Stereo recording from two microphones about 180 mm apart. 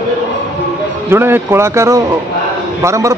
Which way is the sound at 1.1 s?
15° right (ahead or behind).